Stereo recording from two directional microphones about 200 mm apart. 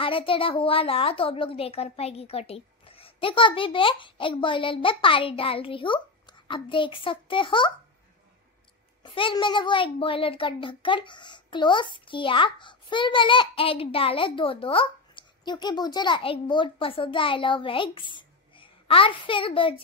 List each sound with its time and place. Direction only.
0.0 s a child's voice: 25° left (ahead or behind)
9.0 s a child's voice: 25° left (ahead or behind)